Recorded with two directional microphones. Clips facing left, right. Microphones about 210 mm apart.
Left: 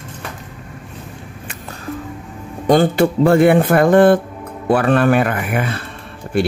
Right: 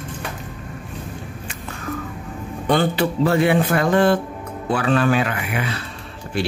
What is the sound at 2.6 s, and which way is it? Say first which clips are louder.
Speech: left 6 dB; 45° left (ahead or behind).